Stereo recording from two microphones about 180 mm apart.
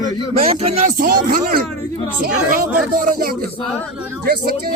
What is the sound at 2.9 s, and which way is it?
Speech, 50° right (ahead or behind).